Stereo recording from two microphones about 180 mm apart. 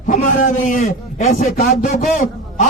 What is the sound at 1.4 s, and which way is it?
Speech, 55° left (ahead or behind).